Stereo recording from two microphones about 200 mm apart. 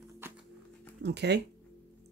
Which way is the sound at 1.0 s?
60° right (ahead or behind).